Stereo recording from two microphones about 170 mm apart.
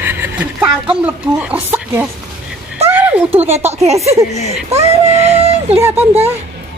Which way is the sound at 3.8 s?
40° right (ahead or behind).